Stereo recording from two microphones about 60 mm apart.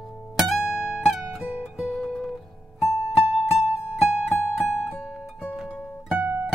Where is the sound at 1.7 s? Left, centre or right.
Centre.